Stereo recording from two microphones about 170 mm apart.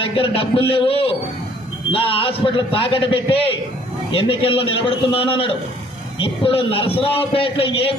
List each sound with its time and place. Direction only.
0.0 s a man's voice: 35° left (ahead or behind)